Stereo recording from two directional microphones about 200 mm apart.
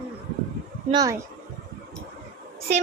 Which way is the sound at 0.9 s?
15° right (ahead or behind).